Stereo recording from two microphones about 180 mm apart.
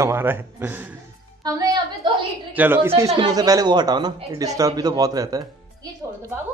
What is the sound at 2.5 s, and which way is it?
Speech, 10° right (ahead or behind).